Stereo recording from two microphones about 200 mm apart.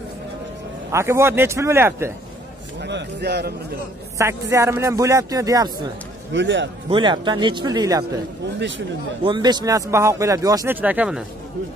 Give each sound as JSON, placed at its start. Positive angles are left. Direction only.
{"t": 0.9, "sound": "speech", "side_deg": -15}
{"t": 2.8, "sound": "a man's voice", "side_deg": -60}
{"t": 4.2, "sound": "speech", "side_deg": -15}
{"t": 6.3, "sound": "a man's voice", "side_deg": -65}
{"t": 6.9, "sound": "speech", "side_deg": -25}
{"t": 8.5, "sound": "a man's voice", "side_deg": -65}
{"t": 9.2, "sound": "speech", "side_deg": -20}